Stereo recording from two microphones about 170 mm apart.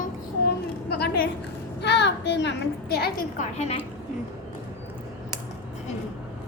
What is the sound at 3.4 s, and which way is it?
Speech, 40° left (ahead or behind).